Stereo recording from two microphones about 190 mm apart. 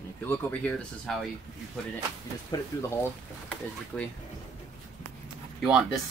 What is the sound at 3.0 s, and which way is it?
Speech, 5° left (ahead or behind).